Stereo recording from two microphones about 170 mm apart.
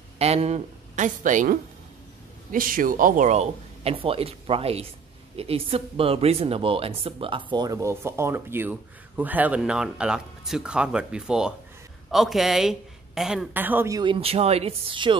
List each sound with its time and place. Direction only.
0.2 s a man's voice: 35° right (ahead or behind)
7.5 s speech: 20° right (ahead or behind)